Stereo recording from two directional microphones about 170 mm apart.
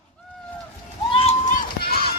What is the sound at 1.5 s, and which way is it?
Run, 55° left (ahead or behind).